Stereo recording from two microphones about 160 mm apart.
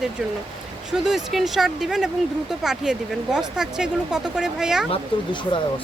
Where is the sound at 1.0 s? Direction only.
Centre (ahead or behind).